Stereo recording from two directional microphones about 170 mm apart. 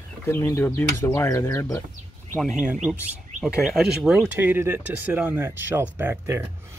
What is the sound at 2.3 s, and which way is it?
Speech, centre (ahead or behind).